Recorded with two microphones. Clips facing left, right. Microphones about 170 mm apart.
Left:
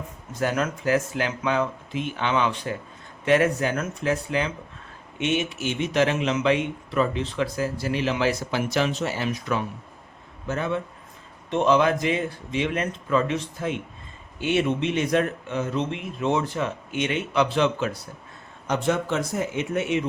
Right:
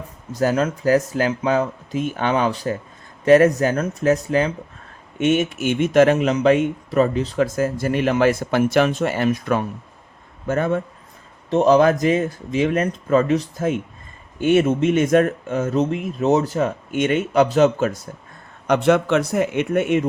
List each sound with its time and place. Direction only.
0.3 s speech: 35° right (ahead or behind)
18.7 s speech: 70° right (ahead or behind); by 20.1 s 50° right (ahead or behind)